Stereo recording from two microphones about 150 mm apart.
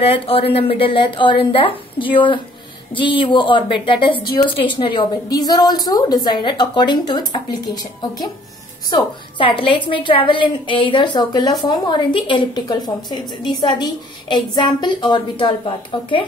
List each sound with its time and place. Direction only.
0.0 s a woman's voice: 40° left (ahead or behind)